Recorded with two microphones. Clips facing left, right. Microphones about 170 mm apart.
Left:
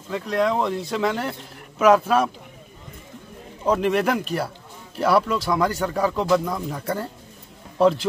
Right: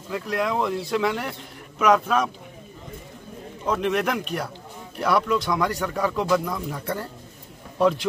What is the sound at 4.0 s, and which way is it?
Speech, 35° left (ahead or behind).